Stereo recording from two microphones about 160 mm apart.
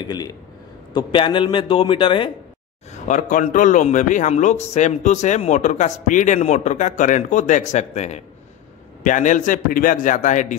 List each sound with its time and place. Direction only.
0.0 s a man's voice: 25° left (ahead or behind)
3.1 s speech: 55° left (ahead or behind)